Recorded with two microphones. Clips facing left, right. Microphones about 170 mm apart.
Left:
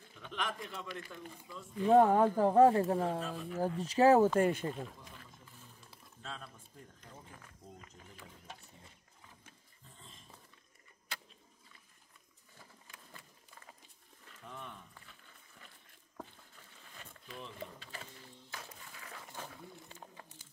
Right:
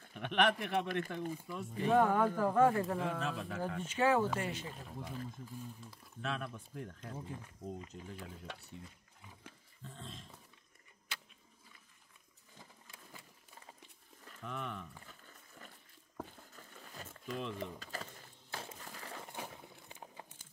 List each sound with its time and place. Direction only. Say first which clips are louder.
0.1 s a man's voice: right 9 dB; 70° right (ahead or behind)
1.9 s speech: left 4 dB; 30° left (ahead or behind)
3.2 s a man's voice: even; 75° right (ahead or behind)
3.6 s speech: left 6 dB; 35° left (ahead or behind)
4.4 s speech: left 10 dB; 55° left (ahead or behind)
6.2 s speech: right 8 dB; 75° right (ahead or behind)
9.9 s dog: right 9 dB; 80° right
14.4 s speech: right 6 dB; 90° right
15.6 s a sound: right 4 dB; 45° right (ahead or behind)
18.5 s music: right 5 dB; 30° right (ahead or behind)
18.9 s crumpling: right 4 dB; 35° right (ahead or behind)
19.5 s a sound: left 2 dB; 20° right (ahead or behind)